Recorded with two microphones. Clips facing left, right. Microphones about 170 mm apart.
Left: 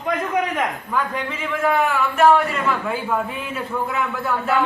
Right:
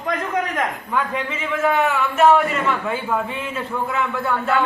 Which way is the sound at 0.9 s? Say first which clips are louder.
Right 1 dB; centre (ahead or behind).